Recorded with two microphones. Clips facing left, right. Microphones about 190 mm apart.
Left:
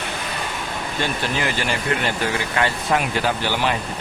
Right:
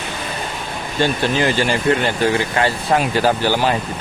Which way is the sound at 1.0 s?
30° right (ahead or behind).